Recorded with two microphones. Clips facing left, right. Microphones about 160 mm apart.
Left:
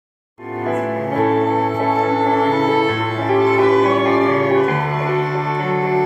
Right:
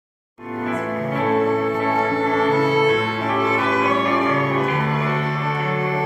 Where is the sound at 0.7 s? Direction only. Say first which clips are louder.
Left 4 dB; 45° left (ahead or behind).